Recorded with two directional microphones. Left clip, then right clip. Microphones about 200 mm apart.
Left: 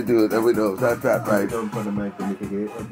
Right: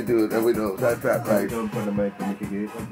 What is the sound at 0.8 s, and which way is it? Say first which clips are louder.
Speech: even; 15° left (ahead or behind).